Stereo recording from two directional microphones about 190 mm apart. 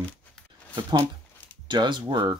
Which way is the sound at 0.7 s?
20° right (ahead or behind).